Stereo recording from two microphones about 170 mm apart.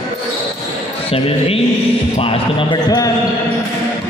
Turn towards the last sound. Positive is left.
turn(degrees=25)  # may be behind; listen again after turning